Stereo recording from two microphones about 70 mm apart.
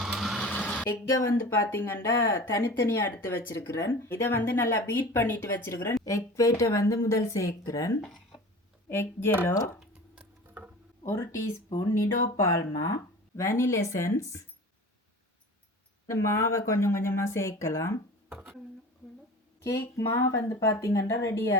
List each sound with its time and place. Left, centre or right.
0.0 s a sound: centre
0.4 s a sound: centre
0.9 s speech: left
5.9 s a woman's voice: left
8.9 s speech: left
11.0 s a woman's voice: left
16.0 s speech: left
20.0 s a woman's voice: left